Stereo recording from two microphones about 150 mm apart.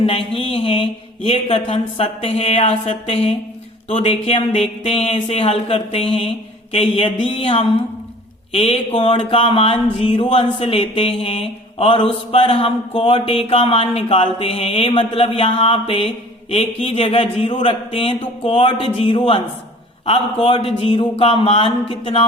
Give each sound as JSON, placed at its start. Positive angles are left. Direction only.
{"t": 0.0, "sound": "speech", "side_deg": 40}